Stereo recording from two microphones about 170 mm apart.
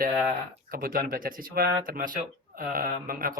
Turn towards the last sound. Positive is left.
turn(degrees=-55)  # may be behind; listen again after turning